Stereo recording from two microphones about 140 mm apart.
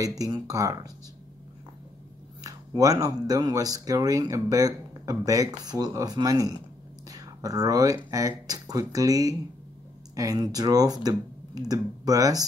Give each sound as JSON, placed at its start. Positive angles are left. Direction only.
{"t": 0.2, "sound": "speech", "side_deg": -25}
{"t": 2.4, "sound": "speech", "side_deg": -25}